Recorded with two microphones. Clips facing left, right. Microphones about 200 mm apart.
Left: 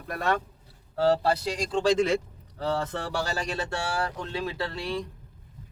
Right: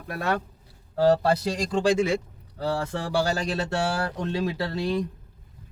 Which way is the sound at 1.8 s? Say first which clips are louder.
Even; 10° right (ahead or behind).